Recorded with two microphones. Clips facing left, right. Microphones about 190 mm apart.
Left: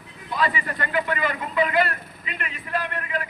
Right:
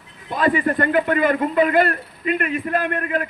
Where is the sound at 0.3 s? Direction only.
50° right (ahead or behind).